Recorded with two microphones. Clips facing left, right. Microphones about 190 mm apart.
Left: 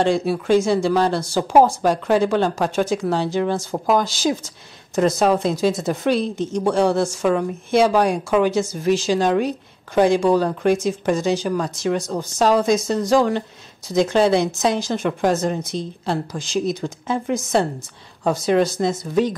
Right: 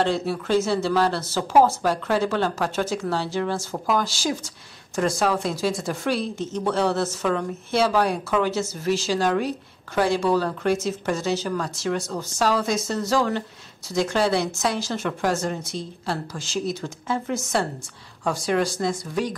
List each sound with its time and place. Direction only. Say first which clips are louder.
0.0 s a woman's voice: left 4 dB; 15° left (ahead or behind)